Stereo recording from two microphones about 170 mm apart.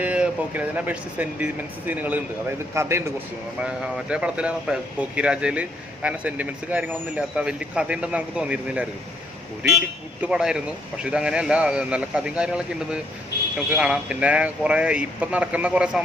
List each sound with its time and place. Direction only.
0.0 s speech: 10° right (ahead or behind)
3.6 s speech: 5° right (ahead or behind)
10.2 s a man's voice: 5° right (ahead or behind)